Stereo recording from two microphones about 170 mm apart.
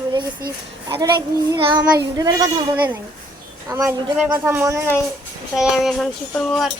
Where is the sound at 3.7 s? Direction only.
15° right (ahead or behind).